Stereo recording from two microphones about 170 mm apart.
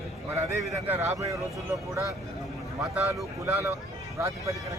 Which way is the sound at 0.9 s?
15° right (ahead or behind).